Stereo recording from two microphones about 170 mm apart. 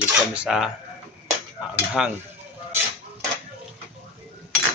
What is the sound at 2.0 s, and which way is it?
Cutlery, 5° right (ahead or behind).